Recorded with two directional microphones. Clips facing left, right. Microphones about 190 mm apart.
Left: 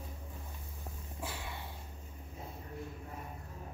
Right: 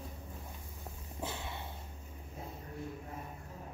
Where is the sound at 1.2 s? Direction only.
25° right (ahead or behind).